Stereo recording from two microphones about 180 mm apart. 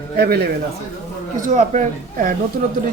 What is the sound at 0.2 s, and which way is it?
Speech, 65° right (ahead or behind).